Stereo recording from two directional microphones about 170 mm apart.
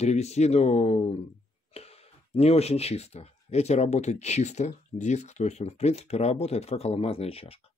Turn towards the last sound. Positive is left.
turn(degrees=35)  # may be behind; listen again after turning